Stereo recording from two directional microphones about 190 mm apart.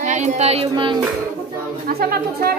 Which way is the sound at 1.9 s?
55° right (ahead or behind).